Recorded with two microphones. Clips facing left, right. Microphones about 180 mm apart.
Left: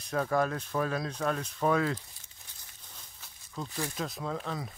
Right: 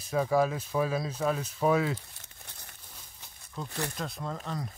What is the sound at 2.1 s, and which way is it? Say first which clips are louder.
Crumpling: right 6 dB; 65° right (ahead or behind).